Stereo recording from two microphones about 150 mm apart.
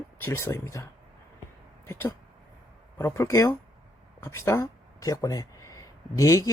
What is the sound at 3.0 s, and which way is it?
Speech, 20° left (ahead or behind).